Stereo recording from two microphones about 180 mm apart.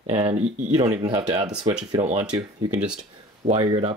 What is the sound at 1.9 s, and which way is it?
Speech, 35° right (ahead or behind).